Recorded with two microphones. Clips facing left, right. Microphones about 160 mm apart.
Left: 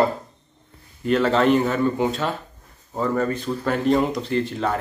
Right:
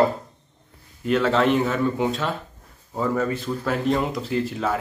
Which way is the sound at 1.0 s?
Centre (ahead or behind).